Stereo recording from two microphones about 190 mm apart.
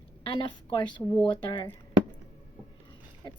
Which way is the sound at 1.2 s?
25° left (ahead or behind).